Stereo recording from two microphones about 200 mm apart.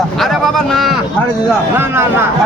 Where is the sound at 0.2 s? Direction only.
Centre (ahead or behind).